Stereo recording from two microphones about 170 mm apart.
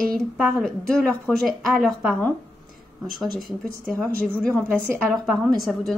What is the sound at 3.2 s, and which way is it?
A woman's voice, centre (ahead or behind).